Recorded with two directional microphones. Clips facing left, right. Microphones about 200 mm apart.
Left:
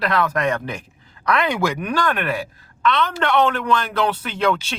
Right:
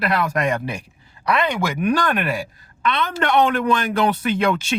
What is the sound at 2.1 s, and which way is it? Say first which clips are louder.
Speech: right 1 dB; 10° right (ahead or behind).